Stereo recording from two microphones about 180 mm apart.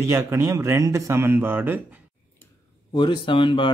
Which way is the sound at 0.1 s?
15° right (ahead or behind).